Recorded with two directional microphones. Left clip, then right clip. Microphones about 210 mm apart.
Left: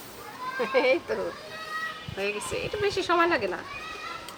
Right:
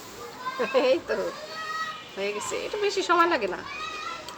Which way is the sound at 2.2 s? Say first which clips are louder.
Even; centre (ahead or behind).